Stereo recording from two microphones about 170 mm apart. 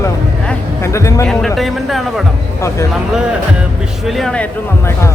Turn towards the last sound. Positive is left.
turn(degrees=5)  # may be behind; listen again after turning